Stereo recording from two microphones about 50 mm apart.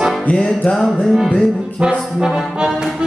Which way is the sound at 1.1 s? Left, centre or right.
Centre.